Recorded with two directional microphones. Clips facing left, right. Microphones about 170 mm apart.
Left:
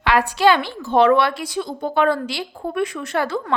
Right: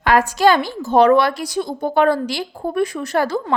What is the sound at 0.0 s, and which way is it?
A woman's voice, 45° right (ahead or behind).